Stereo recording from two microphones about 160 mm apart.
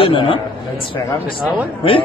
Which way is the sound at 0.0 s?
30° left (ahead or behind).